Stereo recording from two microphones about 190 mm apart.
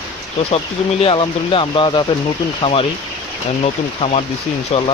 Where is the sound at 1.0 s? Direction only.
30° left (ahead or behind).